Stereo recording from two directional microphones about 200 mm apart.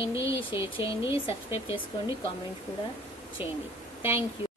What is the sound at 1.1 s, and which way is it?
Speech, 30° left (ahead or behind).